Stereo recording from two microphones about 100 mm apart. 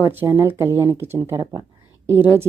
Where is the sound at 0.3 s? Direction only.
25° right (ahead or behind).